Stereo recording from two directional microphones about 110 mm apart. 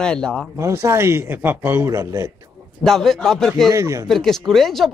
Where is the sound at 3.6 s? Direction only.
30° right (ahead or behind).